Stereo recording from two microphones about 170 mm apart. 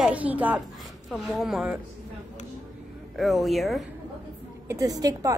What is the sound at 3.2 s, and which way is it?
Speech, centre (ahead or behind).